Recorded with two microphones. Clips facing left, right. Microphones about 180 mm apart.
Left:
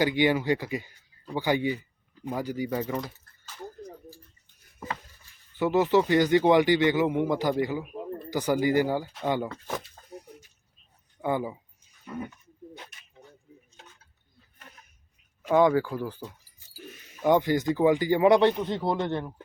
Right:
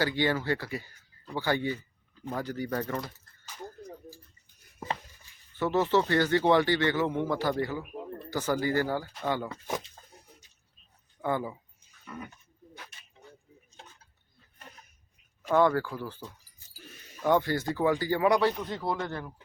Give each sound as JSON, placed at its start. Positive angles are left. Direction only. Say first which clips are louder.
{"t": 0.0, "sound": "speech", "louder": "left 4 dB", "side_deg": 15}
{"t": 5.5, "sound": "speech", "louder": "left 3 dB", "side_deg": 15}
{"t": 11.2, "sound": "speech", "louder": "left 2 dB", "side_deg": 15}
{"t": 15.4, "sound": "speech", "louder": "left 3 dB", "side_deg": 15}